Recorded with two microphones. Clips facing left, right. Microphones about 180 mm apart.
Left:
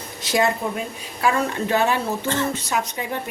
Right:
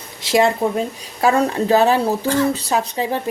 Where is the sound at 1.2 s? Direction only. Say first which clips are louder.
Right 5 dB; 35° right (ahead or behind).